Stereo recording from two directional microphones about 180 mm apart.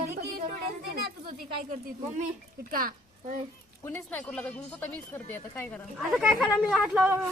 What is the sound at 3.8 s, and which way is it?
A woman's voice, 10° left (ahead or behind).